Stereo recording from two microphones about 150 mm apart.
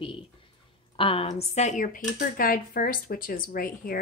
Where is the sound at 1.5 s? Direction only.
50° left (ahead or behind); by 4.0 s 75° left (ahead or behind).